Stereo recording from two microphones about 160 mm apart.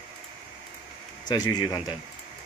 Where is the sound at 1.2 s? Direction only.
25° left (ahead or behind).